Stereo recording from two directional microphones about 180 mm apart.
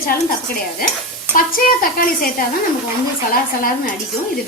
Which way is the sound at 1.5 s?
50° left (ahead or behind).